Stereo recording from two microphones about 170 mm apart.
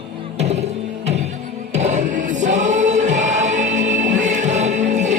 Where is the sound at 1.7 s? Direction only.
45° right (ahead or behind).